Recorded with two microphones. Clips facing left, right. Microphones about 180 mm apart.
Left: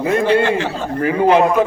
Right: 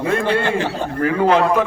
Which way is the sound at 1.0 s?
25° left (ahead or behind).